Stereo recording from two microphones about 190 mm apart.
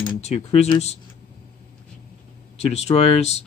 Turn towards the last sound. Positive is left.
turn(degrees=35)  # may be behind; listen again after turning